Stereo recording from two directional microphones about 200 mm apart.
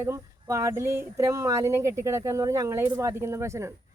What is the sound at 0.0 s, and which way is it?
Speech, 15° right (ahead or behind).